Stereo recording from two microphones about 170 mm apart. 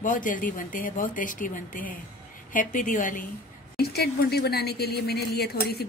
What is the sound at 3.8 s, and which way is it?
Speech, 70° left (ahead or behind).